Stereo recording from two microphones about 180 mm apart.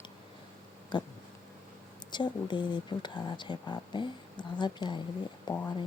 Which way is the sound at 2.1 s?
25° left (ahead or behind).